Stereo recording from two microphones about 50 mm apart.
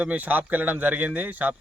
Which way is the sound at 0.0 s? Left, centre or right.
Right.